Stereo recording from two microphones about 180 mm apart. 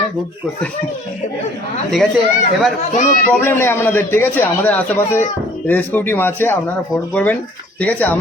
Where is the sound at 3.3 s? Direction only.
10° left (ahead or behind).